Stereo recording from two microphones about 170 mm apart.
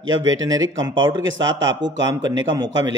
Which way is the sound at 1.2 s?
90° right.